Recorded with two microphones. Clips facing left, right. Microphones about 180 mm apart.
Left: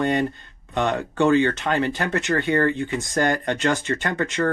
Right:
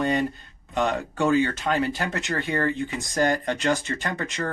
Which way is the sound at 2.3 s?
60° left (ahead or behind).